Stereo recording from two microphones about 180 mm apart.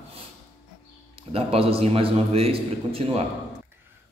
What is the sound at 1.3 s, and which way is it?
A man's voice, 35° right (ahead or behind).